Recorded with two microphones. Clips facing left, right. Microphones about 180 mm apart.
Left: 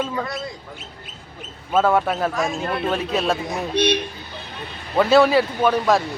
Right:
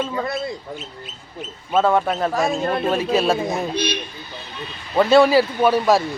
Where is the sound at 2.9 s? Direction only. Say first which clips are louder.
Right 3 dB; centre (ahead or behind).